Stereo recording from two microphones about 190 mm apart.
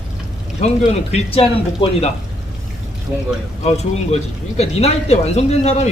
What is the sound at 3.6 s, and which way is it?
Speech, 35° left (ahead or behind).